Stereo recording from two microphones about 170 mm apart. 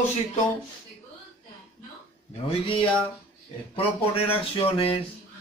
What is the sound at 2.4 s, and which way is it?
Speech, 30° left (ahead or behind).